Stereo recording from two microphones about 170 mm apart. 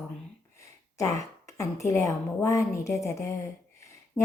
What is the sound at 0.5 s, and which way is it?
A woman's voice, 15° left (ahead or behind).